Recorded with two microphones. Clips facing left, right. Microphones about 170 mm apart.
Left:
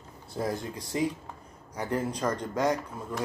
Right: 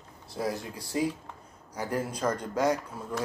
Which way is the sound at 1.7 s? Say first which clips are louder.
Left 1 dB; 10° right (ahead or behind).